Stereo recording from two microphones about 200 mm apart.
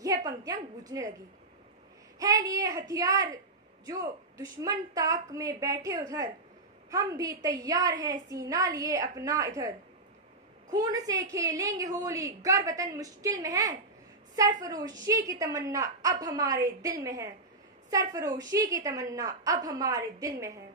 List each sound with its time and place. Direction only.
0.0 s a sound: 20° right (ahead or behind)
0.9 s a woman's voice: 20° right (ahead or behind)
2.1 s a woman's voice: 15° right (ahead or behind)
10.7 s a woman's voice: 20° right (ahead or behind)